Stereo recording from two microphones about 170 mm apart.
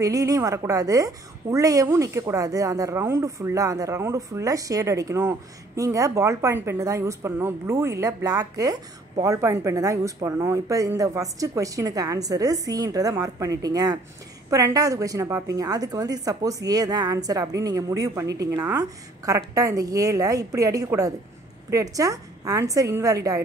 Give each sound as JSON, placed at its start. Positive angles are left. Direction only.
{"t": 0.0, "sound": "a woman's voice", "side_deg": -20}